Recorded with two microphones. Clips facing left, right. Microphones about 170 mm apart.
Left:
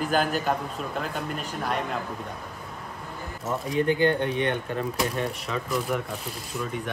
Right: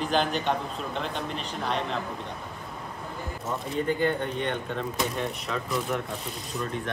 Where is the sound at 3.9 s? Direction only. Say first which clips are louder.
Left 3 dB; 80° left.